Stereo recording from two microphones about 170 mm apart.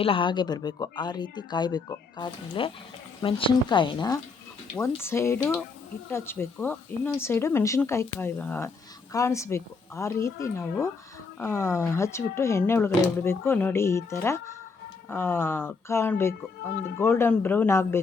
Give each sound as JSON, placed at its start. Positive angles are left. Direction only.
{"t": 0.0, "sound": "speech", "side_deg": 30}
{"t": 4.9, "sound": "speech", "side_deg": 15}